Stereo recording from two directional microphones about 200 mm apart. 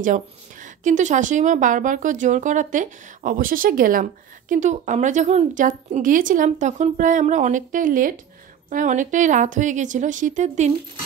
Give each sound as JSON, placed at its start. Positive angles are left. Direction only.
{"t": 0.0, "sound": "a woman's voice", "side_deg": -40}